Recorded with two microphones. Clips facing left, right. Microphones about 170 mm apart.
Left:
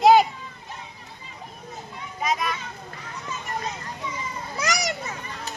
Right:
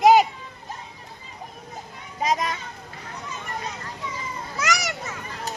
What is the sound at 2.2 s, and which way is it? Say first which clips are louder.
Speech: right 2 dB; 40° right (ahead or behind).